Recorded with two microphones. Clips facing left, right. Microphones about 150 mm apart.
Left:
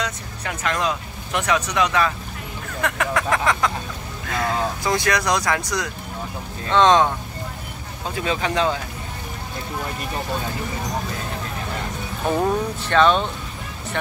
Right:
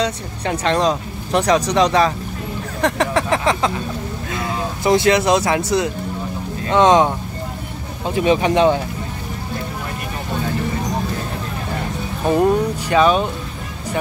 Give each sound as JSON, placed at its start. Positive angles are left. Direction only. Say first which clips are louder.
{"t": 0.0, "sound": "speech", "louder": "right 7 dB", "side_deg": -30}
{"t": 6.7, "sound": "speech", "louder": "right 3 dB", "side_deg": -20}
{"t": 8.2, "sound": "speech", "louder": "right 8 dB", "side_deg": -20}
{"t": 12.3, "sound": "speech", "louder": "right 5 dB", "side_deg": -10}